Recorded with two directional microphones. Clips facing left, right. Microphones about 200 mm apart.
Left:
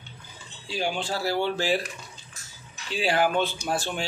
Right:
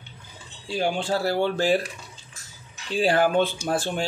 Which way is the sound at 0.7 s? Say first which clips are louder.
Right 4 dB; 50° right (ahead or behind).